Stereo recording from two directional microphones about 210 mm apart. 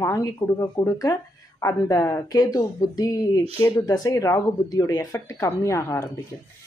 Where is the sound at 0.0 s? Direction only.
15° left (ahead or behind).